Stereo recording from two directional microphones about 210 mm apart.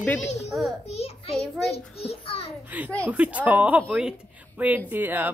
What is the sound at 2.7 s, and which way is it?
A woman's voice, 10° right (ahead or behind).